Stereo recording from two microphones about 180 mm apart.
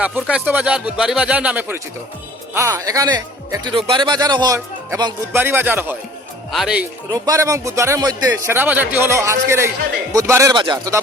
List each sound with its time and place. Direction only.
0.0 s speech: 5° right (ahead or behind)
7.1 s speech: 20° right (ahead or behind)